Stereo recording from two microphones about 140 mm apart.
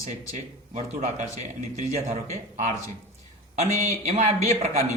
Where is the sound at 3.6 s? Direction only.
55° right (ahead or behind).